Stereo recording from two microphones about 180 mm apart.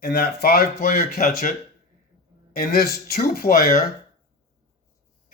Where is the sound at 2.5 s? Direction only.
55° left (ahead or behind).